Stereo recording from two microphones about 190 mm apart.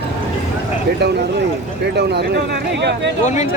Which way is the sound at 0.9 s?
60° right (ahead or behind).